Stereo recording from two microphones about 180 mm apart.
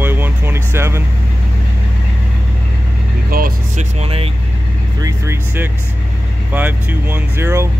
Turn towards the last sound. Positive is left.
turn(degrees=-15)  # may be behind; listen again after turning